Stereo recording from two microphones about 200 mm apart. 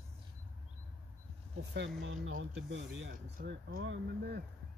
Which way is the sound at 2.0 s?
70° right (ahead or behind).